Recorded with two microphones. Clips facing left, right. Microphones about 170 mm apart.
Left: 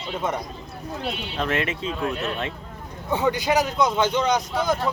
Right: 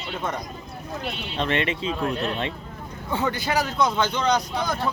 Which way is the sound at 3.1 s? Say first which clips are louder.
Left 4 dB; 15° left (ahead or behind).